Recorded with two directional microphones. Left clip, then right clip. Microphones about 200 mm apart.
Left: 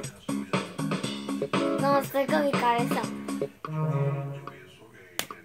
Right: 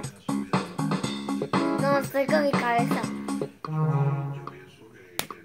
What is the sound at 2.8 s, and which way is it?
Music, 20° right (ahead or behind).